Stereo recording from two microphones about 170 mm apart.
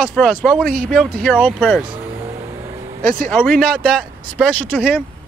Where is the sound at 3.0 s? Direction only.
55° right (ahead or behind).